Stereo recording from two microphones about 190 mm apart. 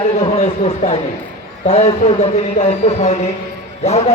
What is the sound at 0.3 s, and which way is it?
A man's voice, 35° left (ahead or behind).